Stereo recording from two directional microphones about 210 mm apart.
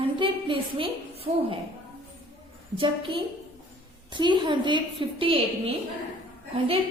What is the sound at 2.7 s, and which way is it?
A woman's voice, 25° right (ahead or behind).